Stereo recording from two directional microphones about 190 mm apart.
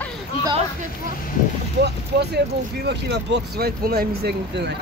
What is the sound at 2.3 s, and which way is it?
Speech, 60° right (ahead or behind).